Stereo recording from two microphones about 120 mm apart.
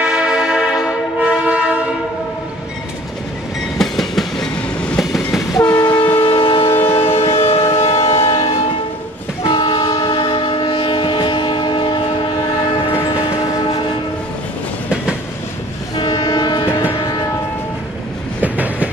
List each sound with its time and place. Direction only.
0.0 s music: 5° right (ahead or behind)
3.7 s train: centre (ahead or behind)
5.7 s train: 40° left (ahead or behind); by 8.5 s 55° left (ahead or behind)
9.5 s train: 45° left (ahead or behind)
16.0 s train: 40° left (ahead or behind)
18.4 s train: 15° right (ahead or behind)